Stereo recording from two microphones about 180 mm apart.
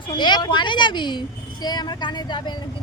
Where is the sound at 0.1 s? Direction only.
25° left (ahead or behind).